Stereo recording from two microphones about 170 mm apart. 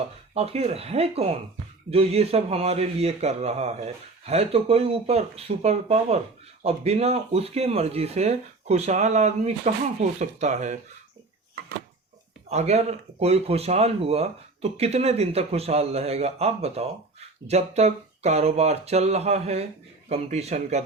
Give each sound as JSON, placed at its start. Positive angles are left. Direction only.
{"t": 0.3, "sound": "speech", "side_deg": -40}
{"t": 12.5, "sound": "speech", "side_deg": -40}